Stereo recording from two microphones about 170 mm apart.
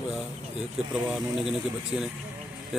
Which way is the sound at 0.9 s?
5° right (ahead or behind).